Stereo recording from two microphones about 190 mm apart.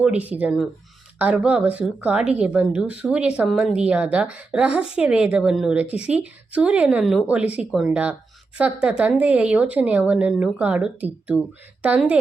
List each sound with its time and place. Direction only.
0.0 s a woman's voice: 5° right (ahead or behind)